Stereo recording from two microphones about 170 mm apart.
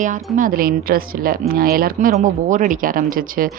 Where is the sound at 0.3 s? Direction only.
55° right (ahead or behind).